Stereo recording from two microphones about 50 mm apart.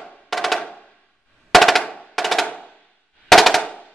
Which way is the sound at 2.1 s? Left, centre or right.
Centre.